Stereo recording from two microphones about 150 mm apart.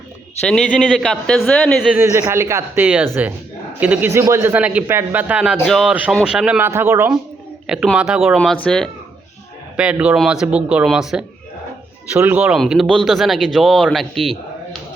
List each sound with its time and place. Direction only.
0.4 s speech: 5° left (ahead or behind)
1.9 s a man's voice: 15° right (ahead or behind)
6.7 s a man's voice: 15° right (ahead or behind)
7.9 s speech: 5° right (ahead or behind)
9.7 s a man's voice: 5° right (ahead or behind)